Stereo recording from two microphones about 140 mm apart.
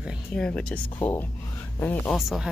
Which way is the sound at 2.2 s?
Centre (ahead or behind).